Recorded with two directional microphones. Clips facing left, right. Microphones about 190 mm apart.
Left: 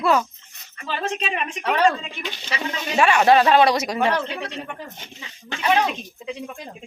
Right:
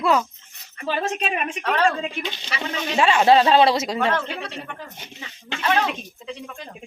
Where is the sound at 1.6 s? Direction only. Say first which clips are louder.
Left 2 dB; 10° left (ahead or behind).